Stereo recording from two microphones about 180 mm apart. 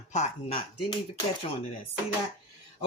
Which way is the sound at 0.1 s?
40° left (ahead or behind).